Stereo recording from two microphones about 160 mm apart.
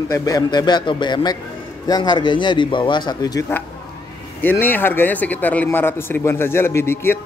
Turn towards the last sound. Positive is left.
turn(degrees=15)  # may be behind; listen again after turning